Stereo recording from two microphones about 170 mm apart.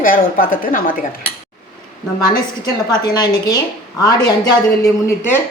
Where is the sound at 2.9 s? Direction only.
25° left (ahead or behind).